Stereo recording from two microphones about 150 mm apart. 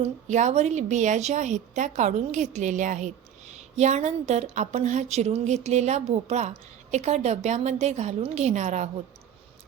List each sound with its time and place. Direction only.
0.0 s a woman's voice: 50° right (ahead or behind)